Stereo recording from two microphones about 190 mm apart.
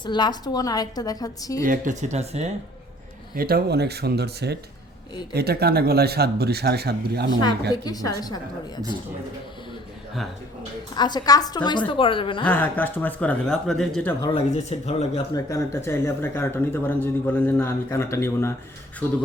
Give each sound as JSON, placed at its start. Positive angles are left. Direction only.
{"t": 0.0, "sound": "a woman's voice", "side_deg": 25}
{"t": 1.6, "sound": "speech", "side_deg": -45}
{"t": 3.3, "sound": "speech", "side_deg": -50}
{"t": 7.7, "sound": "a woman's voice", "side_deg": 20}
{"t": 10.9, "sound": "a woman's voice", "side_deg": 20}
{"t": 12.5, "sound": "speech", "side_deg": 10}
{"t": 14.2, "sound": "speech", "side_deg": 25}
{"t": 15.3, "sound": "speech", "side_deg": 15}